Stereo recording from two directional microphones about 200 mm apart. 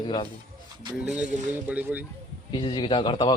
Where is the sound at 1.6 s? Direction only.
5° right (ahead or behind).